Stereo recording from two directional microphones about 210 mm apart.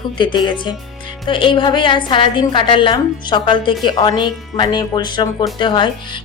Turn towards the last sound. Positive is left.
turn(degrees=25)  # may be behind; listen again after turning